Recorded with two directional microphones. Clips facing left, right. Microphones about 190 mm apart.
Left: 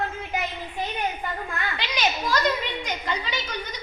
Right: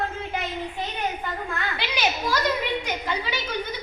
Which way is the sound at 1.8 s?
10° right (ahead or behind).